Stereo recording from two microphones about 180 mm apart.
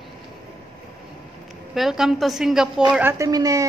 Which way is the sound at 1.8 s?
Centre (ahead or behind).